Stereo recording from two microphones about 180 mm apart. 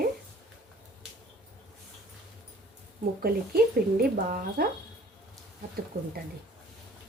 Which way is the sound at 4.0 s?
55° right (ahead or behind).